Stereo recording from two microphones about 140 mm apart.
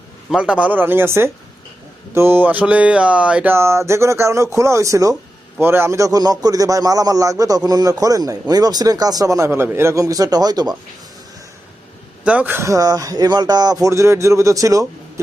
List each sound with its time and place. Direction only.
0.3 s a man's voice: 5° right (ahead or behind); by 10.8 s 30° right (ahead or behind)
12.2 s a man's voice: 10° right (ahead or behind)